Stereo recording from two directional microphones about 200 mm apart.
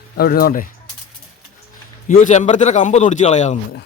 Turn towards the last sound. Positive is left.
turn(degrees=35)  # may be behind; listen again after turning